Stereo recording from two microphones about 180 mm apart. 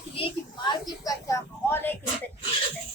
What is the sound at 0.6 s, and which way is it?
A woman's voice, 20° left (ahead or behind).